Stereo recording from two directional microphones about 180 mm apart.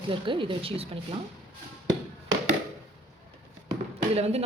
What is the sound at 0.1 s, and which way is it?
Speech, 30° right (ahead or behind).